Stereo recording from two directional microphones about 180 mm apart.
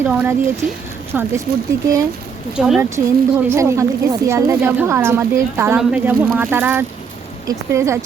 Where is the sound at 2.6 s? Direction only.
5° right (ahead or behind).